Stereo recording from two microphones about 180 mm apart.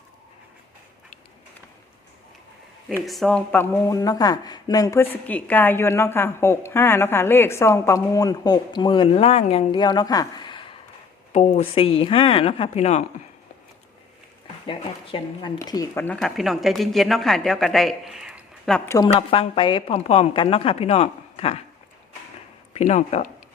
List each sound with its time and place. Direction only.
3.1 s a woman's voice: centre (ahead or behind); by 10.8 s 25° left (ahead or behind)
11.3 s speech: 40° left (ahead or behind)
14.4 s speech: 30° left (ahead or behind)
16.0 s a woman's voice: 5° left (ahead or behind)
18.9 s speech: 20° left (ahead or behind)
19.1 s speech: 30° left (ahead or behind)
22.7 s speech: 35° left (ahead or behind)